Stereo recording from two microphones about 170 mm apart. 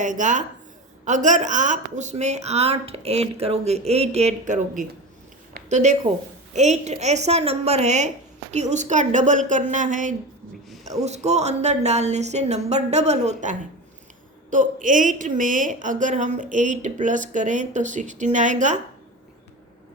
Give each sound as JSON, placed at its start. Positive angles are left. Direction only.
{"t": 0.0, "sound": "a woman's voice", "side_deg": -50}